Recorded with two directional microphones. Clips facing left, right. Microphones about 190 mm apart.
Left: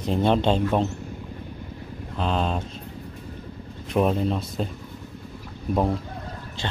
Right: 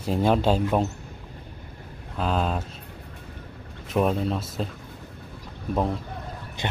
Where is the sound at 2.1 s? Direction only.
5° right (ahead or behind).